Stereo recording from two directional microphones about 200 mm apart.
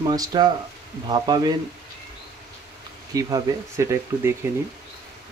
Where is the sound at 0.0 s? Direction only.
20° right (ahead or behind).